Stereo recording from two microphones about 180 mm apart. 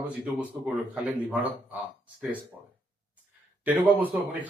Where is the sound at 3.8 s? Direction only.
10° right (ahead or behind).